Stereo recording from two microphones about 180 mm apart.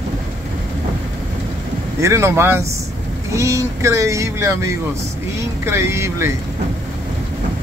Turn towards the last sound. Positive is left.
turn(degrees=-15)  # may be behind; listen again after turning